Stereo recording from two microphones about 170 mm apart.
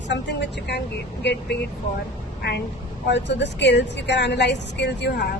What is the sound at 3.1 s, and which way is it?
Speech, 90° left.